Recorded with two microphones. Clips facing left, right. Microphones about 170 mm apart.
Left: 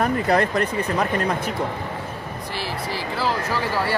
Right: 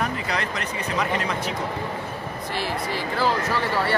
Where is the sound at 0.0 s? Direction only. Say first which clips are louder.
Left 7 dB; 50° left (ahead or behind).